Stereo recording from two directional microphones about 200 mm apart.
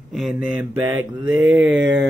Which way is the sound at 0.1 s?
5° right (ahead or behind).